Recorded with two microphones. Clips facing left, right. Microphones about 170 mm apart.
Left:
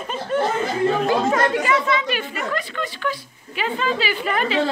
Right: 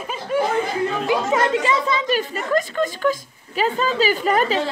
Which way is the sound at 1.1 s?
20° right (ahead or behind).